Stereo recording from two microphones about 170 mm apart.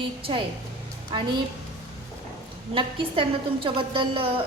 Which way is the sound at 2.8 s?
30° right (ahead or behind).